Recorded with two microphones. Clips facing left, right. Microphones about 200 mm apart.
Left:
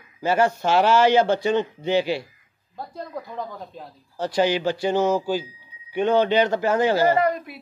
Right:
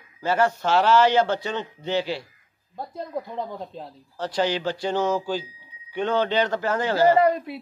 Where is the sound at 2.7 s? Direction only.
20° right (ahead or behind).